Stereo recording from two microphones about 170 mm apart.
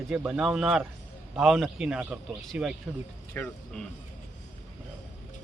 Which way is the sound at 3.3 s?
10° left (ahead or behind).